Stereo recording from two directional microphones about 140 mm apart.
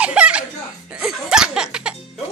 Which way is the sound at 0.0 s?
10° right (ahead or behind).